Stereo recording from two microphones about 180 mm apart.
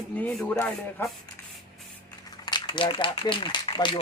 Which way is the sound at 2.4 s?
25° left (ahead or behind).